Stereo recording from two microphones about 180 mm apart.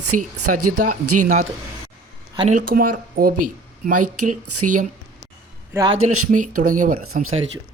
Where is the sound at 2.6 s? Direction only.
55° right (ahead or behind).